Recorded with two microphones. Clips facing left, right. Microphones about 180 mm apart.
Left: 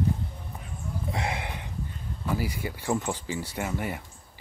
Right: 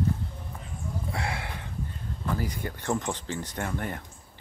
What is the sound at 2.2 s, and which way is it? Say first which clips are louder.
Speech: left 1 dB; 10° left (ahead or behind).